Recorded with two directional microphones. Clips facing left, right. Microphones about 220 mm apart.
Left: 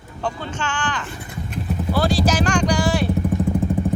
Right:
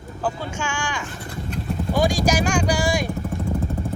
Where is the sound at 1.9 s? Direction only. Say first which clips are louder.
Even; 15° right (ahead or behind).